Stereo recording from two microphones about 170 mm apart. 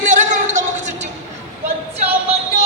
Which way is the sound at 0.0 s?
45° right (ahead or behind).